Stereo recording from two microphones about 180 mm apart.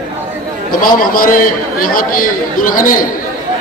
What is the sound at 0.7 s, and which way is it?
A man's voice, 50° left (ahead or behind).